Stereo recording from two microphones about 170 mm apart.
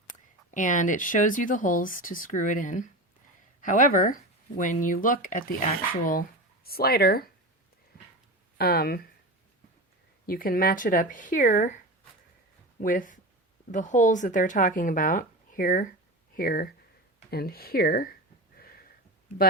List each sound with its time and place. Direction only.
0.1 s speech: 50° left (ahead or behind); by 7.3 s 65° left (ahead or behind)
8.5 s speech: 65° left (ahead or behind)
10.2 s speech: 60° left (ahead or behind)
12.8 s speech: 50° left (ahead or behind)
18.5 s a sound: 60° left (ahead or behind)